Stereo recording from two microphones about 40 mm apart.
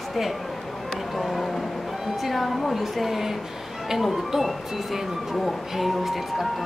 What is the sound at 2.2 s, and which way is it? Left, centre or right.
Speech, centre.